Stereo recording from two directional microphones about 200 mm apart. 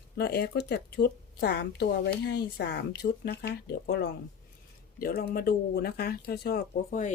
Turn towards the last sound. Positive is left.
turn(degrees=45)  # may be behind; listen again after turning